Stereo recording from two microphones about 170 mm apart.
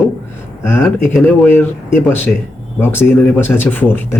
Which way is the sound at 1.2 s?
10° left (ahead or behind).